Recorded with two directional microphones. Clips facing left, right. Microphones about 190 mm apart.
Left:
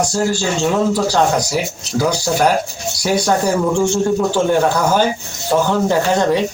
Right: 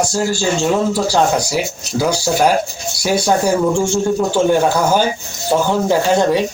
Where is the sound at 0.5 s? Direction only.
20° left (ahead or behind).